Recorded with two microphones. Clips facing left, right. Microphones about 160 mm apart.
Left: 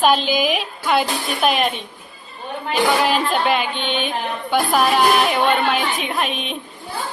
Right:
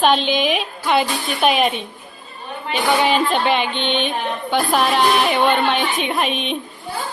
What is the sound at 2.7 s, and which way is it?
Speech, centre (ahead or behind).